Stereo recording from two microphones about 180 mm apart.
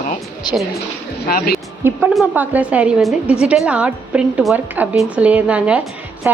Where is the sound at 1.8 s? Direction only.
5° right (ahead or behind).